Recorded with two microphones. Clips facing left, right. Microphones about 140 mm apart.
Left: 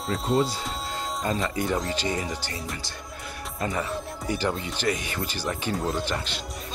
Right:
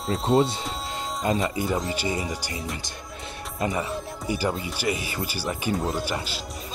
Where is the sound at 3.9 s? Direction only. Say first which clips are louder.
Right 1 dB; 5° right (ahead or behind).